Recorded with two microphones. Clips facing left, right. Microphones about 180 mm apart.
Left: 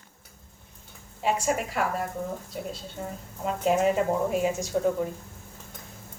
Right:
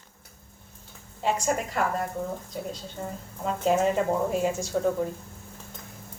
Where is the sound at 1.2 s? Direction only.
5° left (ahead or behind).